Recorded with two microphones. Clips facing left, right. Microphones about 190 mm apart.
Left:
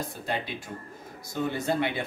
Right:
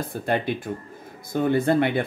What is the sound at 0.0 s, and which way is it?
Speech, 55° right (ahead or behind).